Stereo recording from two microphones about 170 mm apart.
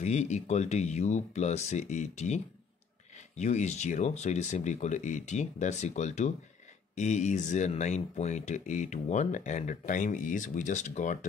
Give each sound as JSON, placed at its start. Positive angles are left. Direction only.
{"t": 0.0, "sound": "speech", "side_deg": 40}